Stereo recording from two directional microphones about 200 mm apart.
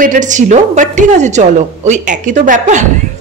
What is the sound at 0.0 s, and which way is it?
Speech, 40° right (ahead or behind).